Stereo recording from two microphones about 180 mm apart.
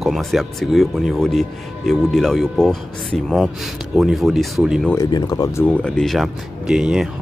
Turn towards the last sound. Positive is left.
turn(degrees=-5)  # may be behind; listen again after turning